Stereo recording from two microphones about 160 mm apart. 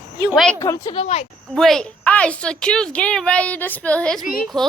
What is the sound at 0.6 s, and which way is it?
Speech, 20° left (ahead or behind).